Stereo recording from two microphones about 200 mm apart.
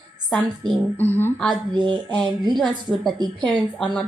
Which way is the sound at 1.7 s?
25° right (ahead or behind).